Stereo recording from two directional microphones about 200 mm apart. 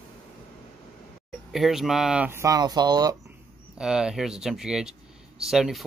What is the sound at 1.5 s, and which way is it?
Speech, centre (ahead or behind).